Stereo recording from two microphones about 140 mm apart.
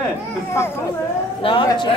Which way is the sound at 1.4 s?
35° left (ahead or behind).